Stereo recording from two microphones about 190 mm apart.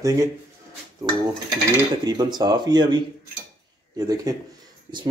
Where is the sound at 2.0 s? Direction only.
20° right (ahead or behind).